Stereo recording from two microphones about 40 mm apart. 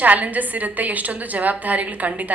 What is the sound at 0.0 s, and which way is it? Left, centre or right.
A woman's voice, right.